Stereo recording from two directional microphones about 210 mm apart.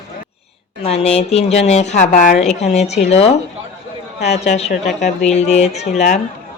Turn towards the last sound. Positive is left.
turn(degrees=35)  # may be behind; listen again after turning